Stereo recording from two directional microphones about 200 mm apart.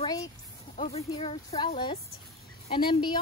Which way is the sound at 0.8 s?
30° left (ahead or behind).